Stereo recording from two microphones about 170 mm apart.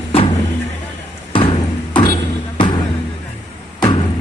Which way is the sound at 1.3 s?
30° left (ahead or behind).